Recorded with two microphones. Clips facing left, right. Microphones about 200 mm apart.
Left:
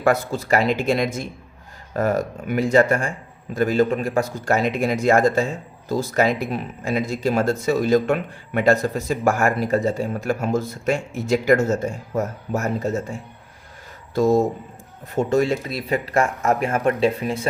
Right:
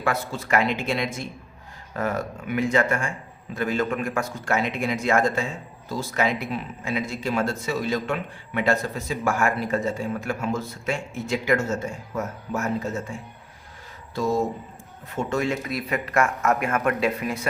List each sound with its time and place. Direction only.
0.0 s speech: 40° left (ahead or behind)
14.2 s speech: 45° left (ahead or behind); by 17.5 s 30° left (ahead or behind)